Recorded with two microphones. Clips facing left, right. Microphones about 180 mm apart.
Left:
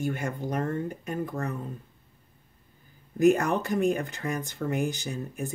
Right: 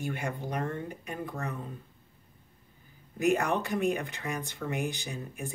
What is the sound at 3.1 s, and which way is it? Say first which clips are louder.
Speech: left 5 dB; 45° left (ahead or behind).